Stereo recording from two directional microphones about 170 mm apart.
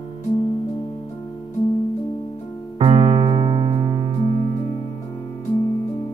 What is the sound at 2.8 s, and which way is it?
Music, 30° right (ahead or behind).